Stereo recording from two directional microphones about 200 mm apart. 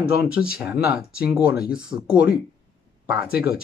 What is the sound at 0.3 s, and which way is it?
Speech, 5° right (ahead or behind).